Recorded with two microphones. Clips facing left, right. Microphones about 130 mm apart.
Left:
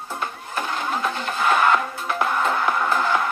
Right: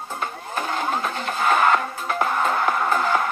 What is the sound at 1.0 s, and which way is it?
Music, 40° right (ahead or behind).